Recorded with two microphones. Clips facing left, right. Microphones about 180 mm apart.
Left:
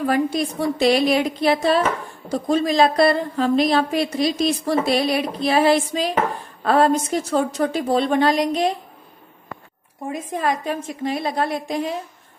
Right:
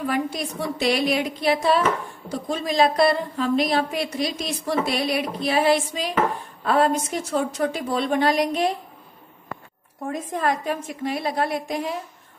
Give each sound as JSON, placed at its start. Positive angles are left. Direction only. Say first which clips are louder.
{"t": 0.0, "sound": "a woman's voice", "louder": "left 5 dB", "side_deg": 30}
{"t": 10.0, "sound": "a woman's voice", "louder": "left 1 dB", "side_deg": 15}